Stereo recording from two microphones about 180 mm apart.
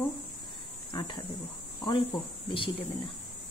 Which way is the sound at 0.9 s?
25° left (ahead or behind).